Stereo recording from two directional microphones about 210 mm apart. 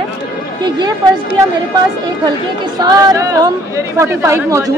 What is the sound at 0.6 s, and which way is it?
Speech, 20° right (ahead or behind).